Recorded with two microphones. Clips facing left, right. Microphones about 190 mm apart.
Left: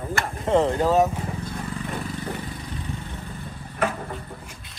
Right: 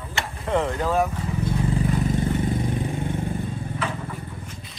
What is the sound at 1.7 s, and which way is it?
Vehicle, 30° right (ahead or behind).